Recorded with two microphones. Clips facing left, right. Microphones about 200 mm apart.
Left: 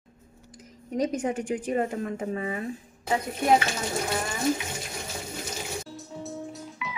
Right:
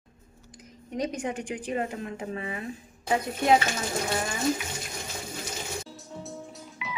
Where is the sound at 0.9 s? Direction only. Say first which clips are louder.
Left 4 dB; 40° left (ahead or behind).